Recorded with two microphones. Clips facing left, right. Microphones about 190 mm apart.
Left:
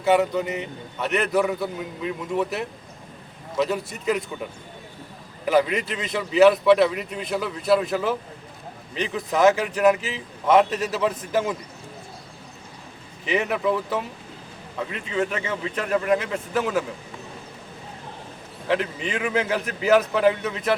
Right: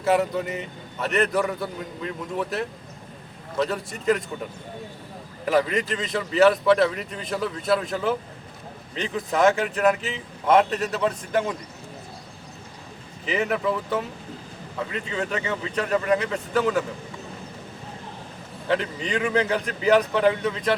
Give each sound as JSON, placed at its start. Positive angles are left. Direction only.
{"t": 0.0, "sound": "a man's voice", "side_deg": 0}
{"t": 5.5, "sound": "a man's voice", "side_deg": 0}
{"t": 13.2, "sound": "a man's voice", "side_deg": 0}
{"t": 15.2, "sound": "a man's voice", "side_deg": 0}
{"t": 18.7, "sound": "a man's voice", "side_deg": 5}